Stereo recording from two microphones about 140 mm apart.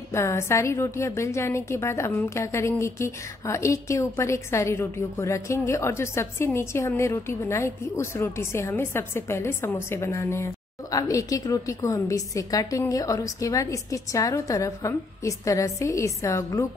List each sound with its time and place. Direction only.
0.1 s a woman's voice: 20° left (ahead or behind)